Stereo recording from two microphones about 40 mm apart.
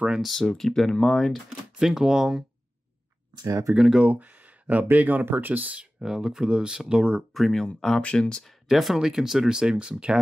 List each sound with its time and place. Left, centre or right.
0.2 s speech: centre
1.8 s speech: centre
3.7 s speech: right
4.0 s speech: right
6.0 s speech: centre
7.3 s speech: centre
7.6 s speech: centre
8.0 s speech: left
8.6 s speech: centre; by 10.1 s right